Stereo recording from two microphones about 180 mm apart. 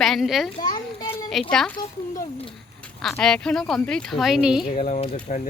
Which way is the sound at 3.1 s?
5° left (ahead or behind).